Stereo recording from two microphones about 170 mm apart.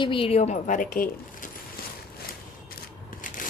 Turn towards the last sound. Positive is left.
turn(degrees=50)  # may be behind; listen again after turning